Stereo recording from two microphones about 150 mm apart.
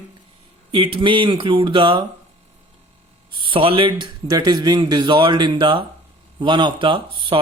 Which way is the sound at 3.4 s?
35° right (ahead or behind).